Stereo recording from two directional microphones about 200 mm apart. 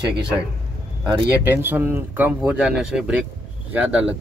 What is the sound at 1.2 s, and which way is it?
Speech, 10° right (ahead or behind).